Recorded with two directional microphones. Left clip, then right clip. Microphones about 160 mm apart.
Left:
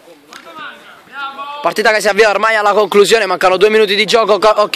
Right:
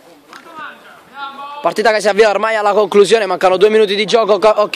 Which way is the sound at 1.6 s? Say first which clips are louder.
Left 1 dB; 15° right (ahead or behind).